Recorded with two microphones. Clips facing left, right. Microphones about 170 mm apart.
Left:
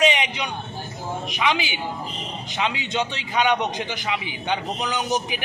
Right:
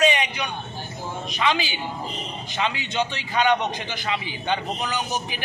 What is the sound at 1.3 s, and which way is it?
A man's voice, 15° left (ahead or behind).